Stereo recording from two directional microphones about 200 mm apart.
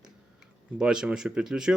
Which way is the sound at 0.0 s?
5° right (ahead or behind).